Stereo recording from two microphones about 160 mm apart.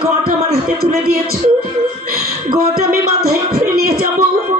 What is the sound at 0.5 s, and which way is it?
Music, 70° right (ahead or behind).